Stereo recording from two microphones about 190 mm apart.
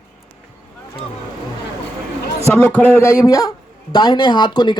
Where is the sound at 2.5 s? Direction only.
10° left (ahead or behind).